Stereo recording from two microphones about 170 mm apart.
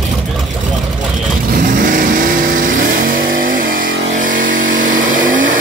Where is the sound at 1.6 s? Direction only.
50° right (ahead or behind).